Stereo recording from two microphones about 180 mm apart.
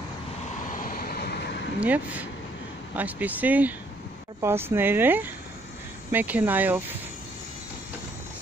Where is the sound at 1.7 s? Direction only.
10° right (ahead or behind).